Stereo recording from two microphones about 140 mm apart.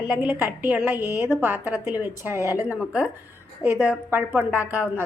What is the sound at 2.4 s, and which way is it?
Speech, 20° left (ahead or behind).